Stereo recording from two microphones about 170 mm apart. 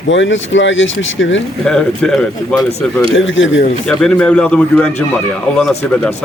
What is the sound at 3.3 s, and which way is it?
Speech, 90° left.